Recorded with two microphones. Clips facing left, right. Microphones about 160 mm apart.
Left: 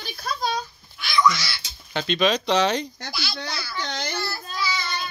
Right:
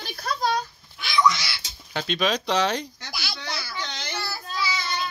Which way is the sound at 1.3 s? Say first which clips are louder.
Left 1 dB; 20° right (ahead or behind).